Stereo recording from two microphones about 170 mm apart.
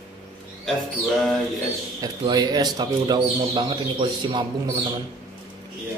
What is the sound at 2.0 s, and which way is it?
A man's voice, 25° right (ahead or behind).